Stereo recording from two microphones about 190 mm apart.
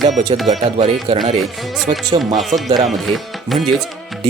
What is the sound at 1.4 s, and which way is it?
Speech, centre (ahead or behind).